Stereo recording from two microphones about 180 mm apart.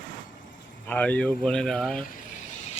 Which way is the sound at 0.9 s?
10° left (ahead or behind).